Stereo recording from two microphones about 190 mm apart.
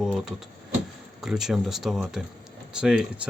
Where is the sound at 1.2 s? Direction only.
Centre (ahead or behind).